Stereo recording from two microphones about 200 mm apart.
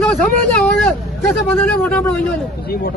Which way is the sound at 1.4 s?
10° left (ahead or behind).